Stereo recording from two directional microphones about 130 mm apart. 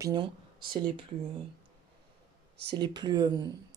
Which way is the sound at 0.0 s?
35° right (ahead or behind).